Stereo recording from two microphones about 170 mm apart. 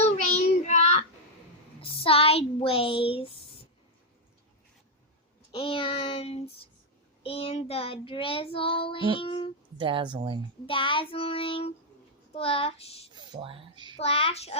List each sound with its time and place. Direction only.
0.3 s child singing: 40° left (ahead or behind)
1.8 s speech: 35° left (ahead or behind)
5.5 s child singing: 30° left (ahead or behind)
9.7 s speech: 30° right (ahead or behind)
10.7 s child singing: 30° left (ahead or behind)
13.1 s a sound: 30° right (ahead or behind)
13.9 s child singing: 35° left (ahead or behind)